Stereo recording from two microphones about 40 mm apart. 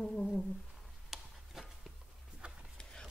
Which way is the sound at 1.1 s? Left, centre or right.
Centre.